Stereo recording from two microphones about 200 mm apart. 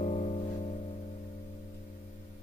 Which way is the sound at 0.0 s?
35° left (ahead or behind).